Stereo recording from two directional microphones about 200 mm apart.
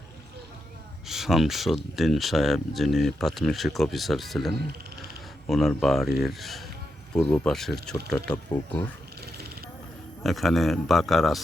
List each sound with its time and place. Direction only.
1.0 s speech: centre (ahead or behind)
9.2 s a sound: 50° right (ahead or behind)
10.2 s speech: centre (ahead or behind)